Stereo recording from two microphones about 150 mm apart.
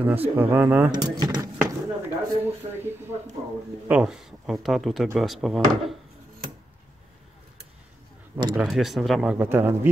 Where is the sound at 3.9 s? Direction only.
5° right (ahead or behind).